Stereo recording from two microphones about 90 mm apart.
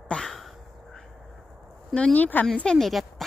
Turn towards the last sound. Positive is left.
turn(degrees=5)  # may be behind; listen again after turning